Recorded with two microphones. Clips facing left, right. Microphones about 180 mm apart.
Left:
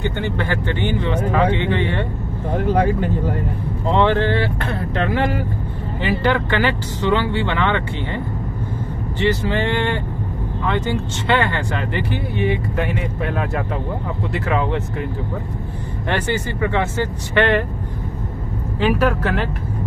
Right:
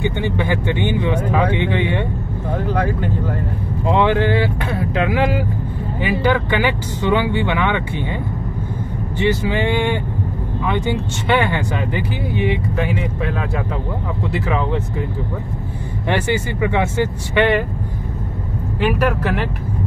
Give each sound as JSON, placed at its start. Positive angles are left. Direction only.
{"t": 0.2, "sound": "speech", "side_deg": -15}
{"t": 3.8, "sound": "speech", "side_deg": -10}
{"t": 9.5, "sound": "speech", "side_deg": -10}
{"t": 14.5, "sound": "speech", "side_deg": 0}
{"t": 16.1, "sound": "speech", "side_deg": -15}
{"t": 18.8, "sound": "speech", "side_deg": -10}